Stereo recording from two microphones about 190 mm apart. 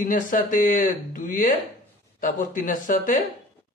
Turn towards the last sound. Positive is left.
turn(degrees=45)  # may be behind; listen again after turning